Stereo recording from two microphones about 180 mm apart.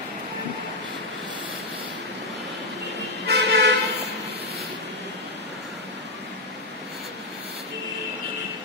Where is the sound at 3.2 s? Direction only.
70° right (ahead or behind).